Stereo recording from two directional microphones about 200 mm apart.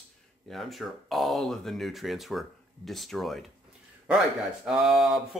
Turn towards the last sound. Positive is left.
turn(degrees=0)  # may be behind; listen again after turning